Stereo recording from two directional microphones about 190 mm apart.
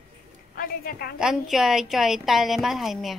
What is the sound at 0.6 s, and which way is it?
Speech, 50° left (ahead or behind).